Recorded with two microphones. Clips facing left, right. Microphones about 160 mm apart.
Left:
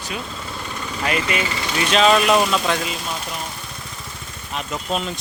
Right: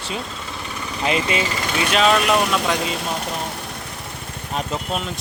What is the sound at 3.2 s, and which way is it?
Vehicle, 65° right (ahead or behind).